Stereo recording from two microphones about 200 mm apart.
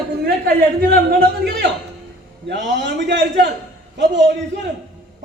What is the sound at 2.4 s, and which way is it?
A man's voice, 60° right (ahead or behind).